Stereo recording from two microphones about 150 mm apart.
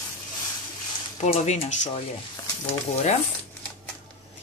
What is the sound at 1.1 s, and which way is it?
Speech, 50° left (ahead or behind).